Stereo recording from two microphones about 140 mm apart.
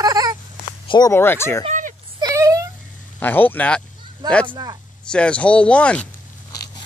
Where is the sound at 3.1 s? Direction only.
15° left (ahead or behind).